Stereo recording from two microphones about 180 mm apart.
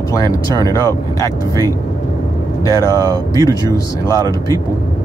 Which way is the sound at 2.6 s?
20° left (ahead or behind).